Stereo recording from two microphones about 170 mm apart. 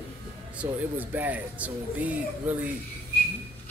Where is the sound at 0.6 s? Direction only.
10° right (ahead or behind).